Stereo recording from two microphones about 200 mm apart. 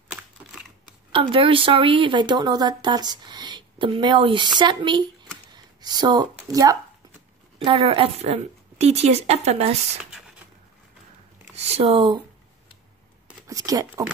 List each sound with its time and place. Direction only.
1.1 s speech: 25° right (ahead or behind)
7.5 s a woman's voice: 25° right (ahead or behind)
11.5 s speech: 30° right (ahead or behind)
13.5 s speech: 15° right (ahead or behind)